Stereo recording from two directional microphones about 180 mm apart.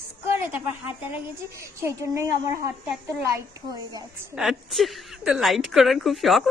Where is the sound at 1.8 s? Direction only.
15° right (ahead or behind).